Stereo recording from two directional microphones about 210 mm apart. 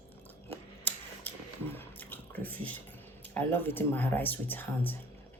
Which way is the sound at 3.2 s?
10° left (ahead or behind).